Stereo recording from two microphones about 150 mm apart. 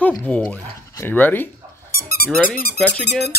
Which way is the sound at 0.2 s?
10° left (ahead or behind).